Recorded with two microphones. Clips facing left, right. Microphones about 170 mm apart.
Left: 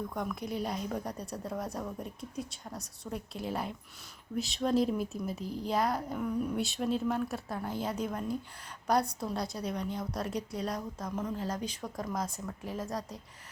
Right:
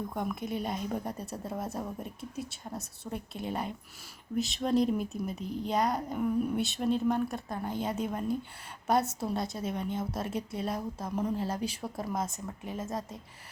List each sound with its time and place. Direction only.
0.2 s speech: centre (ahead or behind)
10.8 s speech: 30° right (ahead or behind)
11.1 s speech: 10° right (ahead or behind)
11.3 s speech: 30° right (ahead or behind)
11.6 s speech: 10° right (ahead or behind)
12.1 s speech: 25° right (ahead or behind)